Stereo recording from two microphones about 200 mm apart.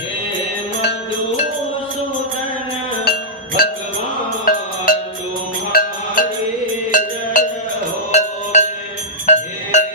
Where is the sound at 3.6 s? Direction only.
45° left (ahead or behind).